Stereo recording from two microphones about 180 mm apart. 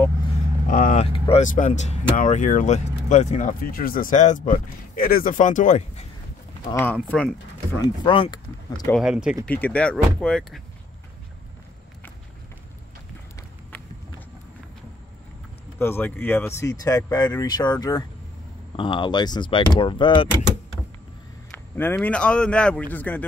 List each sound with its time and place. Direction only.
0.7 s vehicle: 45° left (ahead or behind)
1.0 s vehicle: 30° left (ahead or behind)
1.4 s speech: 45° left (ahead or behind)
6.7 s speech: 10° left (ahead or behind)
8.0 s speech: 25° left (ahead or behind)
8.9 s speech: 5° right (ahead or behind)
9.5 s speech: 10° left (ahead or behind)
15.8 s speech: 10° left (ahead or behind); by 20.2 s 25° left (ahead or behind)
21.7 s speech: 10° left (ahead or behind)